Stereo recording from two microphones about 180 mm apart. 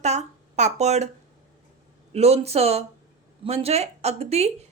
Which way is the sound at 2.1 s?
35° right (ahead or behind).